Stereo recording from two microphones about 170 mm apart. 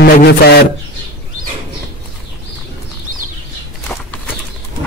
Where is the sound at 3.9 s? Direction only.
5° left (ahead or behind).